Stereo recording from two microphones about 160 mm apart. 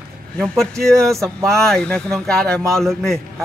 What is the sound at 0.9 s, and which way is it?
Speech, 20° right (ahead or behind).